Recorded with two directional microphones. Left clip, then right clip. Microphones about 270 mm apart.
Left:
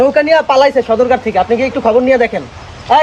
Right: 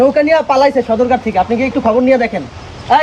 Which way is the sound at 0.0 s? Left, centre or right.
Left.